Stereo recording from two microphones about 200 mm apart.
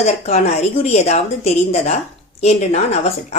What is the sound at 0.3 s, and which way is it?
Speech, 35° left (ahead or behind).